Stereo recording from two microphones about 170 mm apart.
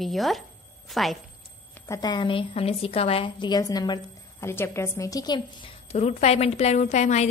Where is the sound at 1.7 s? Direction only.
20° left (ahead or behind).